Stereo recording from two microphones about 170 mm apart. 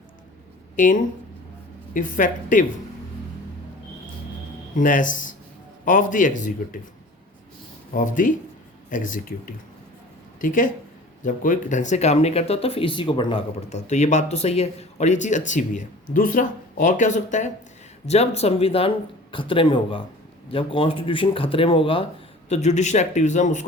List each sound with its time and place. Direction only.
0.8 s speech: 50° left (ahead or behind)
4.8 s speech: 50° left (ahead or behind)
7.9 s speech: 50° left (ahead or behind); by 13.4 s 30° left (ahead or behind)
13.7 s speech: 40° left (ahead or behind)